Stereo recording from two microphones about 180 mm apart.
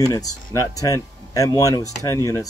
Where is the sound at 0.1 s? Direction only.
20° left (ahead or behind).